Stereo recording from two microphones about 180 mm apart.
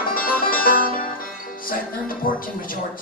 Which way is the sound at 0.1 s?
50° left (ahead or behind).